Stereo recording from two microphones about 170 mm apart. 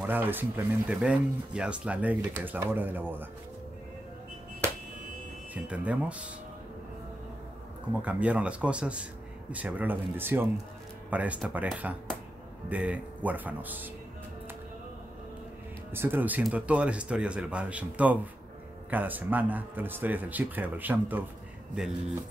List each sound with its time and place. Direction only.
0.0 s speech: 10° right (ahead or behind)
5.5 s speech: 5° right (ahead or behind)
8.0 s speech: 10° right (ahead or behind)
15.9 s speech: 15° right (ahead or behind)